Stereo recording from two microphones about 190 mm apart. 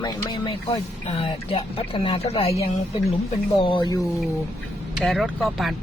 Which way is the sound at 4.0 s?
Centre (ahead or behind).